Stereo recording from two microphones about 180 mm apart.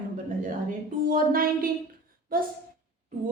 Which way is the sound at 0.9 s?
50° right (ahead or behind).